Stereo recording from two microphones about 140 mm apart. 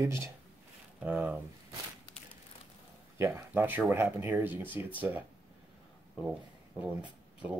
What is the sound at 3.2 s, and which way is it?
Speech, 20° right (ahead or behind).